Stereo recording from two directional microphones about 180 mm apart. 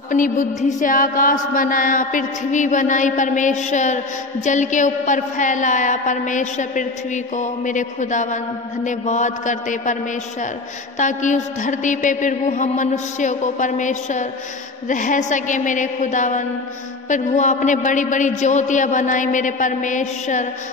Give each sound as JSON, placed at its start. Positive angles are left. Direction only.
{"t": 0.1, "sound": "mantra", "side_deg": 45}
{"t": 11.0, "sound": "mantra", "side_deg": 45}